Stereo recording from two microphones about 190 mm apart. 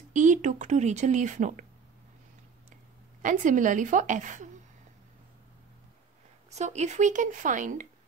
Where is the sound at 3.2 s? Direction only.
40° right (ahead or behind).